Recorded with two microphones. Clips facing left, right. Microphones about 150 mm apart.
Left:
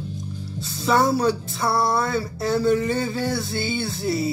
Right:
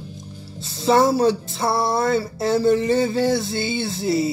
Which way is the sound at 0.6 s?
25° right (ahead or behind).